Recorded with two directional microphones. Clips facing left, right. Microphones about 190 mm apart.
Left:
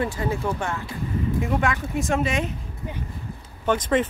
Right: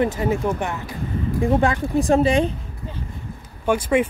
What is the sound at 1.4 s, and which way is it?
Speech, 30° right (ahead or behind).